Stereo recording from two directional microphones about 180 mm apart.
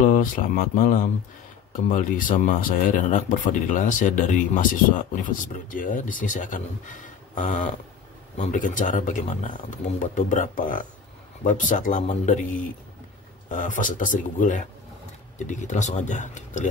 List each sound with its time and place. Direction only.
0.0 s speech: 50° left (ahead or behind)
13.5 s speech: 45° left (ahead or behind)